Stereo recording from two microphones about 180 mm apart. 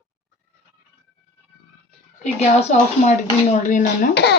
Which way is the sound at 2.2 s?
40° left (ahead or behind).